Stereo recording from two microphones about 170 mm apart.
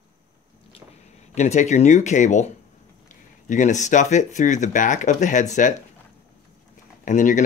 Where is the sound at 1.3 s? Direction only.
45° left (ahead or behind).